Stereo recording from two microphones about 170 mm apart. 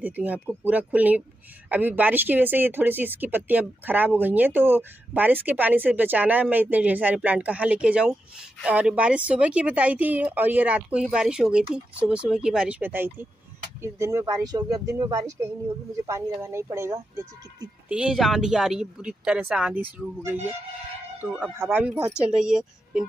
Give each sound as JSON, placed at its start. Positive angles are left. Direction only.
{"t": 0.0, "sound": "speech", "side_deg": -10}
{"t": 21.2, "sound": "speech", "side_deg": -10}